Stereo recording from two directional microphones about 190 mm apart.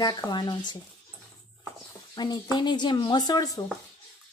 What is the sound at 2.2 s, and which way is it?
A woman's voice, 20° left (ahead or behind).